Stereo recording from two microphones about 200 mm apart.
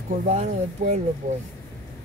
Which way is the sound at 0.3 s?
40° right (ahead or behind).